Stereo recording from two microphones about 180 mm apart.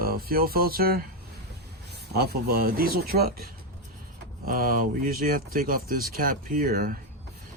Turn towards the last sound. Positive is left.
turn(degrees=-55)  # may be behind; listen again after turning